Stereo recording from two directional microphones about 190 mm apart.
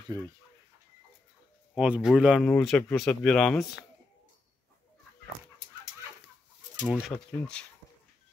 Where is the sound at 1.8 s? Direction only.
5° right (ahead or behind).